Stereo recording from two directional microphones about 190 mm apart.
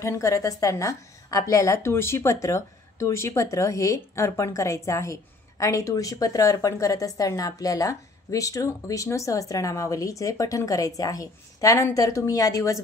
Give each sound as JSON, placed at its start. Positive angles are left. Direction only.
{"t": 0.0, "sound": "speech", "side_deg": 15}